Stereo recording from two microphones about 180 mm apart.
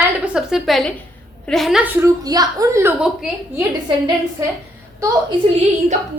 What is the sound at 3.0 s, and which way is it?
Speech, 5° right (ahead or behind).